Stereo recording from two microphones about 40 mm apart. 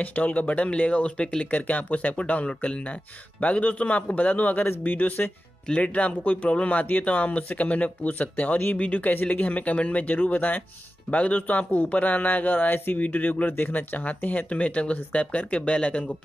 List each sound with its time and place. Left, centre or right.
0.0 s speech: left
1.4 s speech: left
2.1 s speech: left
5.8 s speech: left
11.1 s speech: left
14.5 s speech: left